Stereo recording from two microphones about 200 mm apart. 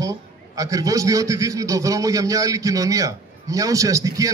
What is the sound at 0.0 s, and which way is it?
A man's voice, 15° right (ahead or behind).